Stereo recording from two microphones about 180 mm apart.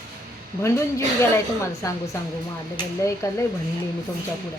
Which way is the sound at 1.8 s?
20° left (ahead or behind).